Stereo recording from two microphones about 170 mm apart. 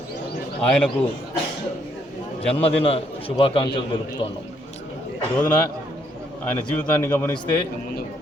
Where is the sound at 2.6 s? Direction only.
35° left (ahead or behind).